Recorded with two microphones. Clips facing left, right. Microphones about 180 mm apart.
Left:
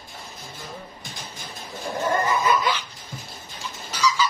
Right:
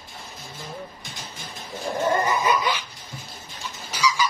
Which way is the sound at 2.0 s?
15° right (ahead or behind).